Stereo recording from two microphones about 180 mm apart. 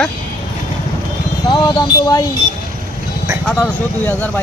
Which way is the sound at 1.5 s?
25° left (ahead or behind).